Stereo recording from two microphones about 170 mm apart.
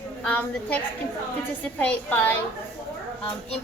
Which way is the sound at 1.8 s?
10° left (ahead or behind).